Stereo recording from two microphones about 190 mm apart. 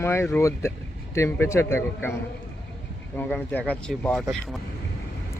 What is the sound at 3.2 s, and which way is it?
A man's voice, 10° left (ahead or behind).